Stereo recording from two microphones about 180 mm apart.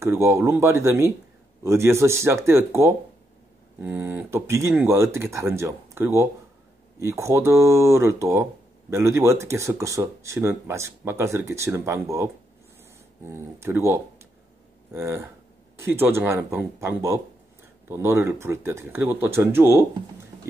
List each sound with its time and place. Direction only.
0.0 s speech: 15° right (ahead or behind)